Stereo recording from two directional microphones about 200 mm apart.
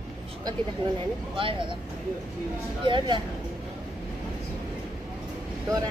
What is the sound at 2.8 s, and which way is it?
Speech, 25° right (ahead or behind).